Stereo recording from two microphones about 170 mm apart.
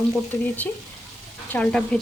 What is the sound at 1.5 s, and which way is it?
Stir, 5° left (ahead or behind).